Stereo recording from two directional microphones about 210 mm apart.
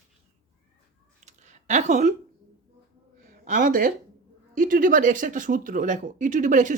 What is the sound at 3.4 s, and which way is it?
Speech, 40° right (ahead or behind).